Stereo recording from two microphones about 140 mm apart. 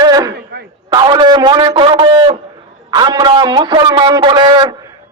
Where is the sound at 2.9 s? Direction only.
30° right (ahead or behind).